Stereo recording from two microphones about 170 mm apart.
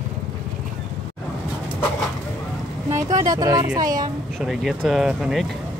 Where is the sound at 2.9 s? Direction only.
20° right (ahead or behind).